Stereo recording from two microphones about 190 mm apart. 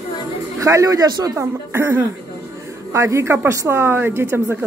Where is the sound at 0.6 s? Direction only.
15° right (ahead or behind).